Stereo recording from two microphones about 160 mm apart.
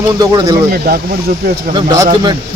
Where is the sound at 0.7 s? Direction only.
70° right (ahead or behind).